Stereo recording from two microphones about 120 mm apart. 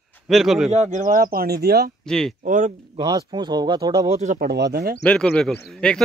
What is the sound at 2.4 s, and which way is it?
Speech, 90° right.